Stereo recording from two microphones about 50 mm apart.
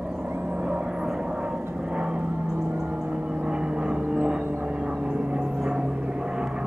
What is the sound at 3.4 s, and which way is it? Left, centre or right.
Vehicle, centre.